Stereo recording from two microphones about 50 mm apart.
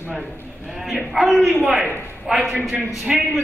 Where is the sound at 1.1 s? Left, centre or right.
Centre.